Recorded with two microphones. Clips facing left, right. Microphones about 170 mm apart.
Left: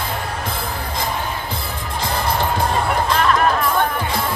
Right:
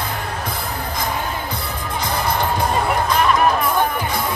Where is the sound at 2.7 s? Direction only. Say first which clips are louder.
Even; 5° right (ahead or behind).